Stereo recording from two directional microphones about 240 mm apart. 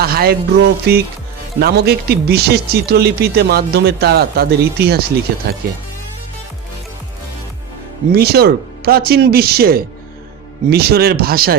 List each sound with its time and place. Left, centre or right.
0.0 s speech: right
8.1 s speech: right